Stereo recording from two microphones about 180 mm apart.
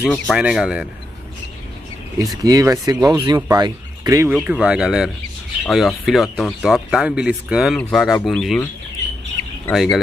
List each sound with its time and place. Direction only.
0.0 s speech: centre (ahead or behind)
2.4 s speech: 20° right (ahead or behind)
4.4 s speech: 5° right (ahead or behind)
9.7 s speech: centre (ahead or behind)